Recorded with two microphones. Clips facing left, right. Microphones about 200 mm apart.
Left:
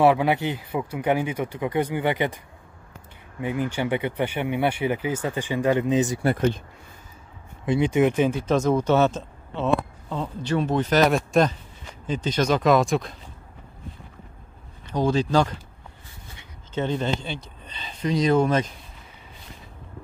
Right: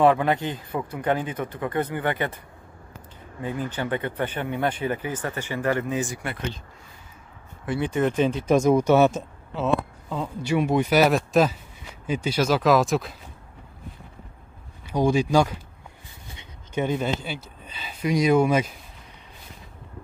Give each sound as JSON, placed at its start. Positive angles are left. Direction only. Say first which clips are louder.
{"t": 0.0, "sound": "speech", "louder": "left 1 dB", "side_deg": 10}
{"t": 6.2, "sound": "speech", "louder": "left 10 dB", "side_deg": 50}
{"t": 7.6, "sound": "speech", "louder": "left 4 dB", "side_deg": 15}
{"t": 8.5, "sound": "speech", "louder": "right 6 dB", "side_deg": -10}
{"t": 14.9, "sound": "speech", "louder": "right 1 dB", "side_deg": -10}